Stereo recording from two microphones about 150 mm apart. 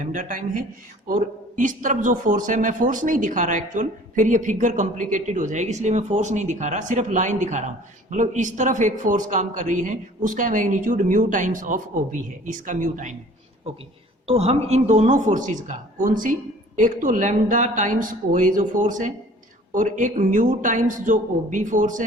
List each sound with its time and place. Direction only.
0.0 s a man's voice: 60° right (ahead or behind)
14.3 s a man's voice: 45° right (ahead or behind); by 22.0 s 60° right (ahead or behind)